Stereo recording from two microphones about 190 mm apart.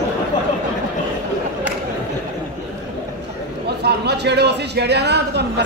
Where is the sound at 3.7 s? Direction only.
60° right (ahead or behind).